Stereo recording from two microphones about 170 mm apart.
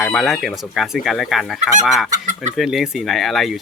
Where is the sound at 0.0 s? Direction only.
Centre (ahead or behind).